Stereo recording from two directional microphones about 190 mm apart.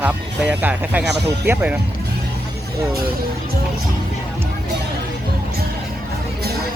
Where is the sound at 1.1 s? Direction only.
60° right (ahead or behind).